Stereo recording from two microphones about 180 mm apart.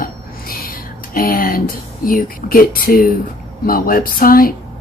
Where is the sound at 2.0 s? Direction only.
50° left (ahead or behind).